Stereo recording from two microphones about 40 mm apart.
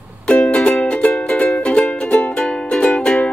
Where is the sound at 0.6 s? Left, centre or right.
Left.